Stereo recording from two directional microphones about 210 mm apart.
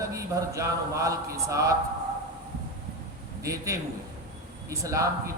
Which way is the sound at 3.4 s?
15° right (ahead or behind).